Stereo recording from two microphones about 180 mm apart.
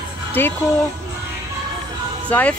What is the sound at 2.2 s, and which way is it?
Speech, 10° left (ahead or behind).